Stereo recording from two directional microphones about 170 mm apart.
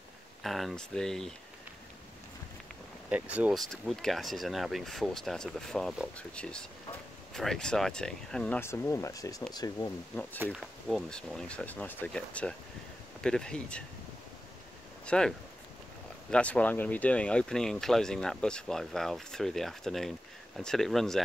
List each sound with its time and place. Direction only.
0.4 s speech: centre (ahead or behind)
3.1 s speech: 10° right (ahead or behind); by 9.9 s 20° left (ahead or behind)
10.5 s speech: centre (ahead or behind)
15.0 s speech: 5° left (ahead or behind)